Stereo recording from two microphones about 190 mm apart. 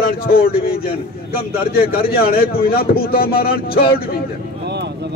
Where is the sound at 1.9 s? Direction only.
50° left (ahead or behind).